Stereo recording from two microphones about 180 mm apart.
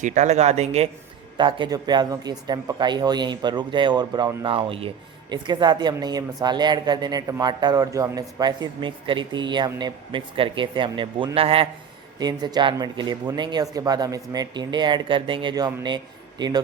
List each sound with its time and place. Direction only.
0.0 s speech: 40° right (ahead or behind)
1.4 s a woman's voice: 25° right (ahead or behind)